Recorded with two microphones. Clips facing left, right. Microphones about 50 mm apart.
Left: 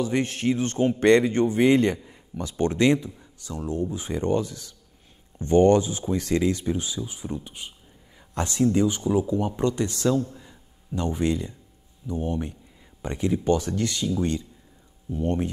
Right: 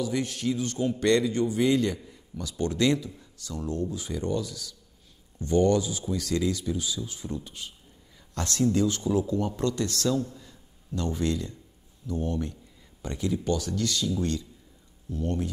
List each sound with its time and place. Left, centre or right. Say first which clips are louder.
0.0 s a man's voice: left 4 dB; left
10.3 s a sound: left 2 dB; centre
12.1 s speech: left 2 dB; left